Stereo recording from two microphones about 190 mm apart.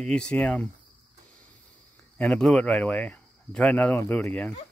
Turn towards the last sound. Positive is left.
turn(degrees=10)  # may be behind; listen again after turning